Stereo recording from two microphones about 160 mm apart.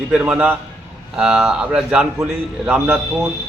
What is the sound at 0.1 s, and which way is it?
A man's voice, 10° right (ahead or behind).